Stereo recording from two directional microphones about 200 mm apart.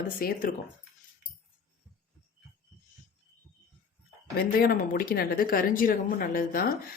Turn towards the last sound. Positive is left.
turn(degrees=45)  # may be behind; listen again after turning